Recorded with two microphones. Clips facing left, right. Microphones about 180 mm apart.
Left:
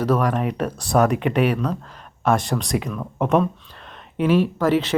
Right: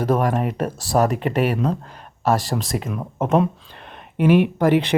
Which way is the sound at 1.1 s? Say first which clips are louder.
Left 1 dB; 40° right (ahead or behind).